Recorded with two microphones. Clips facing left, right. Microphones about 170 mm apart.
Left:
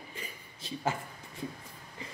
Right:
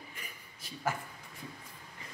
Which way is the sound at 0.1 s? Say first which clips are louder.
Left 5 dB; 25° left (ahead or behind).